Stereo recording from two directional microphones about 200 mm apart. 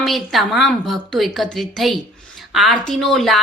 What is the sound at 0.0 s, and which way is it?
A woman's voice, centre (ahead or behind).